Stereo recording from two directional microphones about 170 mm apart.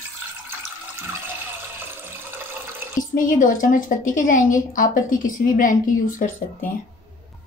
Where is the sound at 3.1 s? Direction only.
50° left (ahead or behind).